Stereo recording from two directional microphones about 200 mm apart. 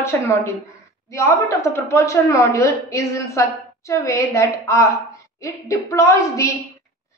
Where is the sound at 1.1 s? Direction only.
15° left (ahead or behind).